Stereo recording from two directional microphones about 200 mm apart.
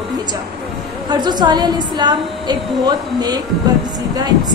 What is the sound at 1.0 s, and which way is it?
A woman's voice, 20° right (ahead or behind).